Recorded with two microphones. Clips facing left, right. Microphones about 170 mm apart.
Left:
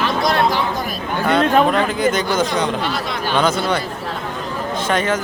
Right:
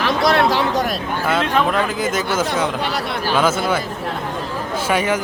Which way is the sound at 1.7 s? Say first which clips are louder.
Left 2 dB; centre (ahead or behind).